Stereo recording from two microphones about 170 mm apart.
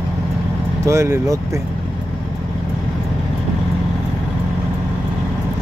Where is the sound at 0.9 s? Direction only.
15° right (ahead or behind).